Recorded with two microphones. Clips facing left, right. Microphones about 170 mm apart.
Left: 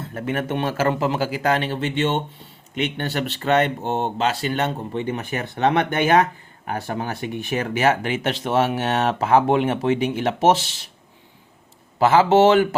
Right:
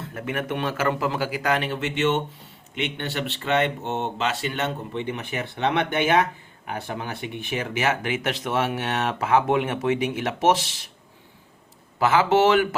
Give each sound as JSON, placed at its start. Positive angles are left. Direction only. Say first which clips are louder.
{"t": 0.1, "sound": "speech", "louder": "left 4 dB", "side_deg": 35}
{"t": 11.9, "sound": "a man's voice", "louder": "left 4 dB", "side_deg": 30}